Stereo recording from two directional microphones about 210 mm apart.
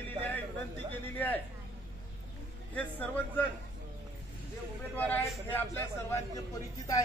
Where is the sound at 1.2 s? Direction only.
10° left (ahead or behind).